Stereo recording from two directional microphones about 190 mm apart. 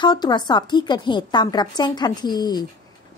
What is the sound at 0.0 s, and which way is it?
A woman's voice, 20° left (ahead or behind).